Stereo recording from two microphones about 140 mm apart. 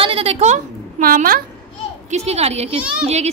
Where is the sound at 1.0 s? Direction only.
85° right.